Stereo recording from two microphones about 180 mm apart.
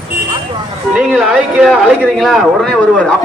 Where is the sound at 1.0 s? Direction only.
5° right (ahead or behind).